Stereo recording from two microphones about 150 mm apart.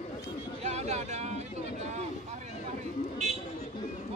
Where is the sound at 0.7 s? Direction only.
50° right (ahead or behind).